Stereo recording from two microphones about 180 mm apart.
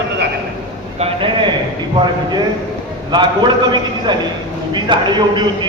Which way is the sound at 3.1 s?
25° right (ahead or behind).